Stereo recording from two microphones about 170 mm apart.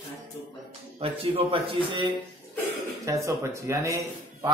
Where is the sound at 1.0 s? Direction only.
35° right (ahead or behind).